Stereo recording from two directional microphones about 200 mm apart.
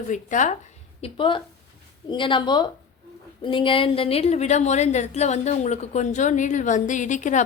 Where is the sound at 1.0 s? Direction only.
25° left (ahead or behind).